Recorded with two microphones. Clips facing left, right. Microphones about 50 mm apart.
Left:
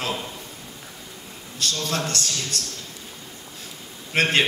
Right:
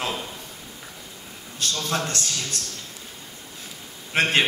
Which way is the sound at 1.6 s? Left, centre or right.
Centre.